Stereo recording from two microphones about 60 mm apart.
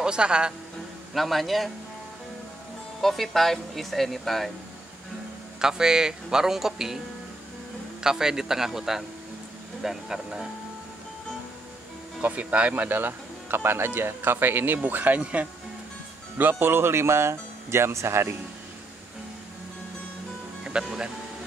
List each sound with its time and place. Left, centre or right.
0.0 s speech: centre
1.1 s speech: centre
3.0 s speech: centre
5.6 s speech: centre
8.0 s speech: centre
12.2 s speech: right
20.6 s speech: centre